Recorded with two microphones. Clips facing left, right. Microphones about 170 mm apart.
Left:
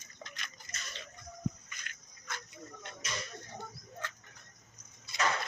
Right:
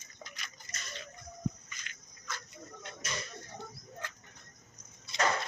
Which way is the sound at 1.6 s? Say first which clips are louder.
Even; 55° left (ahead or behind).